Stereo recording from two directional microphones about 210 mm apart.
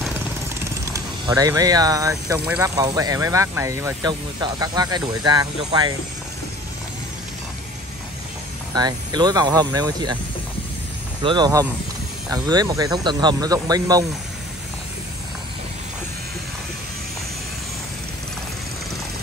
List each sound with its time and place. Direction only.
0.0 s jackhammer: 10° right (ahead or behind)
1.2 s speech: 15° right (ahead or behind)
8.7 s speech: 20° right (ahead or behind)
11.2 s speech: 20° right (ahead or behind)